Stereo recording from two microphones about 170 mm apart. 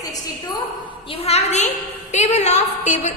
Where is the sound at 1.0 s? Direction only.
35° left (ahead or behind).